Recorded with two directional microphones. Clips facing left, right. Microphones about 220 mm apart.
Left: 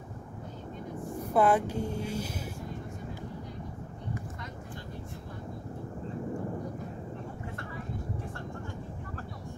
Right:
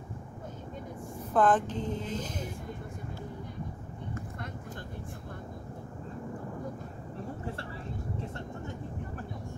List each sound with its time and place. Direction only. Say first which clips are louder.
1.3 s speech: left 1 dB; 10° left (ahead or behind)
7.4 s vehicle: right 1 dB; 30° right (ahead or behind)